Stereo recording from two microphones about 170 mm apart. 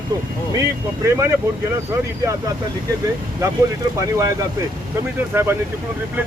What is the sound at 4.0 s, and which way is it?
Speech, 20° right (ahead or behind).